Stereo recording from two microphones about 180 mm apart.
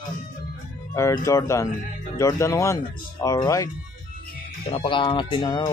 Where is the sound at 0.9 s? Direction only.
15° left (ahead or behind).